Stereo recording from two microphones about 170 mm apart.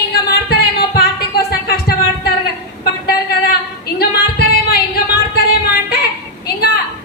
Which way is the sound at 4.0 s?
65° left (ahead or behind).